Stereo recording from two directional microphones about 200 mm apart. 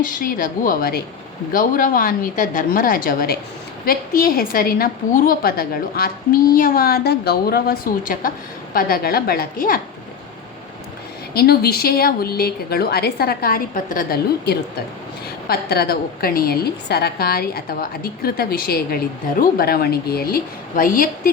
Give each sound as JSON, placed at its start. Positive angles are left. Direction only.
{"t": 0.0, "sound": "a woman's voice", "side_deg": 45}
{"t": 11.3, "sound": "a woman's voice", "side_deg": 50}